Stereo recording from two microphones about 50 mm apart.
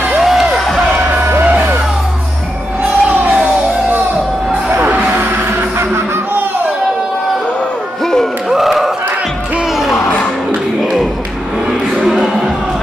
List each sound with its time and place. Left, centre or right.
0.2 s music: centre
1.4 s music: right
2.8 s music: right
4.6 s music: right
8.0 s music: centre
8.5 s a sound: centre
9.8 s music: centre
12.0 s music: centre